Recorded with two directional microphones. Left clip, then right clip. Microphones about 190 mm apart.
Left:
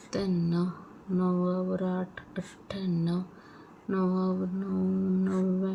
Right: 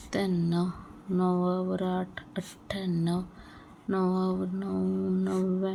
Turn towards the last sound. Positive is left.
turn(degrees=-50)  # may be behind; listen again after turning